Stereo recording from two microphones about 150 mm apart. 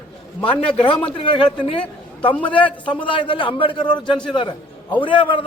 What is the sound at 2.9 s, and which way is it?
A man's voice, 35° left (ahead or behind).